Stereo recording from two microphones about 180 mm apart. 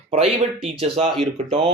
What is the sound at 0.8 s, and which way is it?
Speech, 30° right (ahead or behind).